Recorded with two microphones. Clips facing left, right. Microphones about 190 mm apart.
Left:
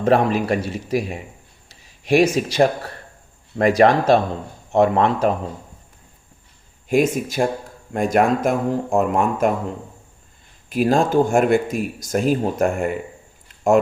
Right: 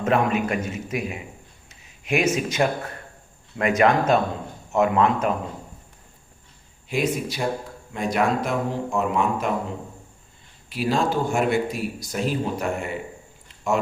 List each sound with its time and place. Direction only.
0.0 s a man's voice: 35° left (ahead or behind)
6.8 s speech: 45° left (ahead or behind)
10.7 s speech: 45° left (ahead or behind)